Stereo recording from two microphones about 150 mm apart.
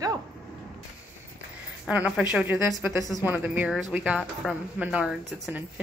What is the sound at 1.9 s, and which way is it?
Speech, 10° right (ahead or behind).